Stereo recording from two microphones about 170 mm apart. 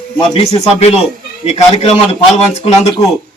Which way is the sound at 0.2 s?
35° left (ahead or behind).